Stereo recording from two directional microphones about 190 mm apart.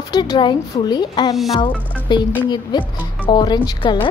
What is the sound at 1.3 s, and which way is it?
Speech, centre (ahead or behind).